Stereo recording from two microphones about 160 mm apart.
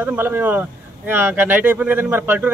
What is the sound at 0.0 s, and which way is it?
Speech, 10° right (ahead or behind).